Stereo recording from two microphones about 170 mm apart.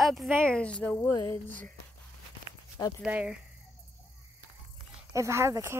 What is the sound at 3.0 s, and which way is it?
Speech, 5° right (ahead or behind).